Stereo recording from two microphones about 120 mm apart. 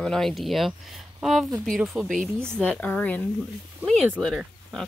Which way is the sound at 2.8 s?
10° left (ahead or behind).